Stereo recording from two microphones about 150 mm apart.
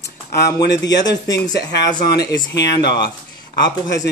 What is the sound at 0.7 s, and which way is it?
A man's voice, 25° left (ahead or behind).